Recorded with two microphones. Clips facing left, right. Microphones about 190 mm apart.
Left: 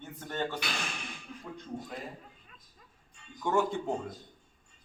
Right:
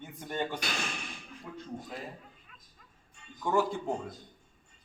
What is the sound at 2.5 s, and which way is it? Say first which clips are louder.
Music: left 1 dB; 35° left (ahead or behind).